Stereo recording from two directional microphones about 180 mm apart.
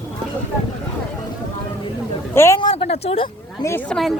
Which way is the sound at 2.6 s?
30° left (ahead or behind).